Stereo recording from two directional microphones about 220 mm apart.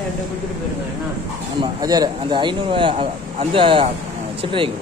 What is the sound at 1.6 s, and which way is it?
Speech, 15° right (ahead or behind).